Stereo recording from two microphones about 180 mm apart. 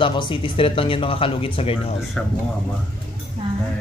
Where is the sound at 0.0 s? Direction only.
25° left (ahead or behind).